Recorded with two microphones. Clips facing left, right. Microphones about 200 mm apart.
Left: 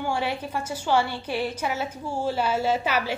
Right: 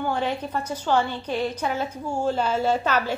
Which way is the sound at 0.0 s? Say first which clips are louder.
Right 2 dB; 10° left (ahead or behind).